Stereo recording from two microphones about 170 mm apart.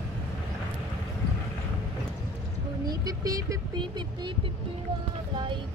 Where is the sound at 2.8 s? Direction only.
20° right (ahead or behind).